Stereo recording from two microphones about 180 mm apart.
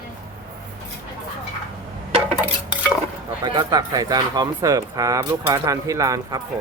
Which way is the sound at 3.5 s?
20° right (ahead or behind).